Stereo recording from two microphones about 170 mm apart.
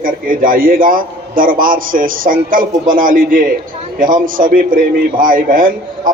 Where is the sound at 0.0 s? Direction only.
55° right (ahead or behind).